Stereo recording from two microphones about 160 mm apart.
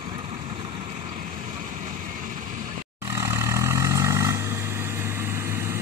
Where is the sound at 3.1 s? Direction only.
15° right (ahead or behind).